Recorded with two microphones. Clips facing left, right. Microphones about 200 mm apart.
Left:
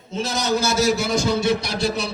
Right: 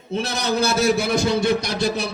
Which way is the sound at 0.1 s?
60° right (ahead or behind).